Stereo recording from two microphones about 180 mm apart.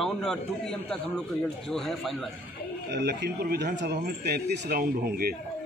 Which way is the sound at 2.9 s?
65° right (ahead or behind).